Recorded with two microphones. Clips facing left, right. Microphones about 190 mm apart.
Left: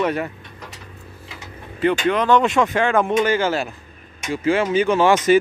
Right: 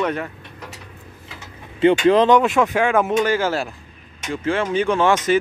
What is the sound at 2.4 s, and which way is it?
Speech, 5° right (ahead or behind).